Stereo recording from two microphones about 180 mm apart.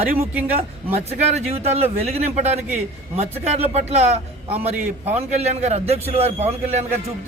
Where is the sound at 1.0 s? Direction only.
35° right (ahead or behind).